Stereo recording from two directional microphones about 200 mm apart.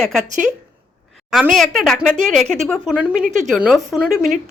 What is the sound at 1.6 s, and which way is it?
Speech, centre (ahead or behind).